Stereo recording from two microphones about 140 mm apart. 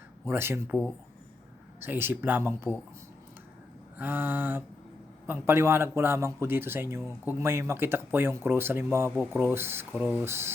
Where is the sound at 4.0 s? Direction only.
15° right (ahead or behind).